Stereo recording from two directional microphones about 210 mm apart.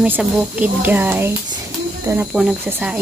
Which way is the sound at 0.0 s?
5° right (ahead or behind).